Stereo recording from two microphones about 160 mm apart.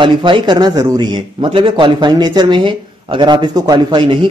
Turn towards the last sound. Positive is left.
turn(degrees=-30)  # may be behind; listen again after turning